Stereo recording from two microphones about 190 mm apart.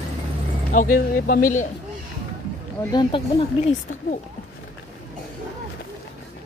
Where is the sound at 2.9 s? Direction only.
25° left (ahead or behind).